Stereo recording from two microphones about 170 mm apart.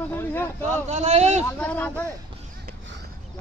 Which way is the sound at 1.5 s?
10° left (ahead or behind).